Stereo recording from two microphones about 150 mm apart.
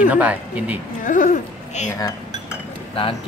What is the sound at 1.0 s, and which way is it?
Speech, 60° left (ahead or behind).